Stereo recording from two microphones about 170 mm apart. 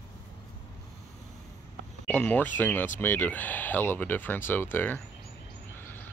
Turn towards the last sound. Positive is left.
turn(degrees=10)  # may be behind; listen again after turning